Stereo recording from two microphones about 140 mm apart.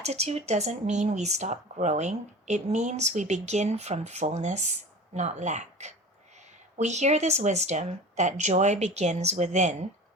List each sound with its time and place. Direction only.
0.0 s speech: 50° right (ahead or behind)